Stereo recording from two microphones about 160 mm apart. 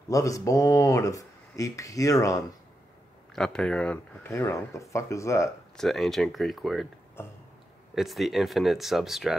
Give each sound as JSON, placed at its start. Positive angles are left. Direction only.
{"t": 0.1, "sound": "speech", "side_deg": 20}
{"t": 3.3, "sound": "speech", "side_deg": 5}
{"t": 5.8, "sound": "speech", "side_deg": 0}
{"t": 7.2, "sound": "speech", "side_deg": 15}
{"t": 7.9, "sound": "speech", "side_deg": 0}